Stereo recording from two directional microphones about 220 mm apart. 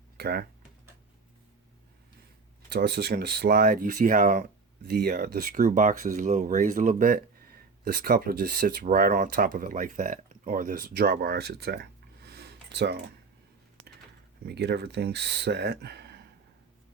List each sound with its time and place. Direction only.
0.2 s speech: 45° right (ahead or behind)
2.6 s speech: 50° right (ahead or behind)
12.2 s a sound: 50° right (ahead or behind)
14.4 s speech: 50° right (ahead or behind)